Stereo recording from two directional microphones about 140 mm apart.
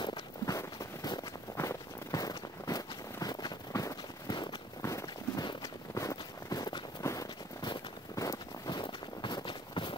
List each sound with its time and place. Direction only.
0.0 s clip-clop: 30° left (ahead or behind)
4.9 s walk: 25° left (ahead or behind)